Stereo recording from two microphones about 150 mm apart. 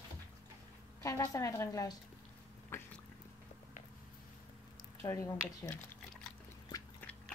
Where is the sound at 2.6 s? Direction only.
15° left (ahead or behind).